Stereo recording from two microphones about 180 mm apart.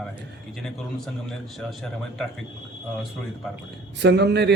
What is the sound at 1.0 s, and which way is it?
A man's voice, centre (ahead or behind).